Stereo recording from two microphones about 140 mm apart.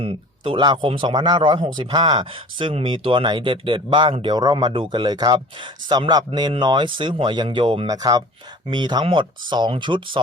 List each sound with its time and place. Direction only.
0.0 s speech: 40° right (ahead or behind)